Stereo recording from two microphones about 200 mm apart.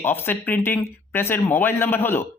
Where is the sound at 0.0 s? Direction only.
10° left (ahead or behind).